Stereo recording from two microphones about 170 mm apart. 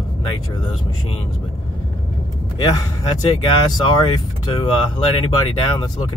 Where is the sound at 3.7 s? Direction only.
25° left (ahead or behind).